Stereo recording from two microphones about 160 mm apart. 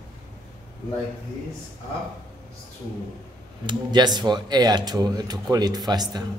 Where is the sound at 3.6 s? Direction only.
25° right (ahead or behind).